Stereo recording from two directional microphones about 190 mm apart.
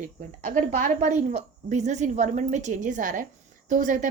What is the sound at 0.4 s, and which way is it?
A woman's voice, 45° right (ahead or behind).